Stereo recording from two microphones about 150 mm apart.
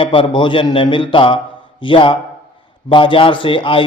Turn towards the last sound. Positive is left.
turn(degrees=35)  # may be behind; listen again after turning